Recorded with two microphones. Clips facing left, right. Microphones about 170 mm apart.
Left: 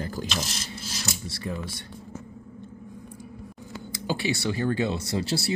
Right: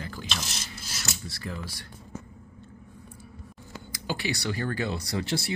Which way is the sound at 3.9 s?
20° left (ahead or behind).